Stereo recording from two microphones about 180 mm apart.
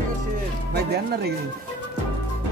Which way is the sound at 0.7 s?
60° right (ahead or behind).